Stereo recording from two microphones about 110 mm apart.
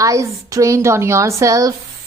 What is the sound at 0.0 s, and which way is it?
A woman's voice, 30° right (ahead or behind).